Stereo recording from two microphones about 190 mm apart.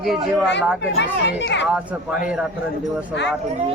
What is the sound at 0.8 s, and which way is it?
Speech, 65° left (ahead or behind).